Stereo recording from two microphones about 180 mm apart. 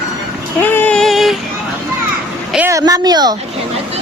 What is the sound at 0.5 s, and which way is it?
Child singing, 10° left (ahead or behind).